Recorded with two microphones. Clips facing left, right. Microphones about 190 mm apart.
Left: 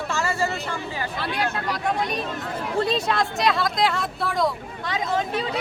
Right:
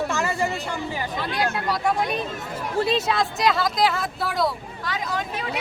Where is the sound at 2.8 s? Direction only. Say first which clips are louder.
Right 2 dB; centre (ahead or behind).